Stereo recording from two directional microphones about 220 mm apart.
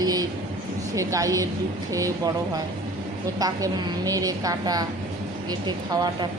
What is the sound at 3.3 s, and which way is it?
A woman's voice, 15° right (ahead or behind).